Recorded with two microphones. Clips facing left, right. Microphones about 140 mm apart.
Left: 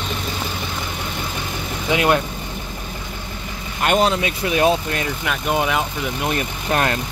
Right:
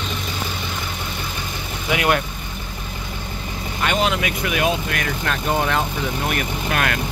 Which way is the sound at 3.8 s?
40° left (ahead or behind).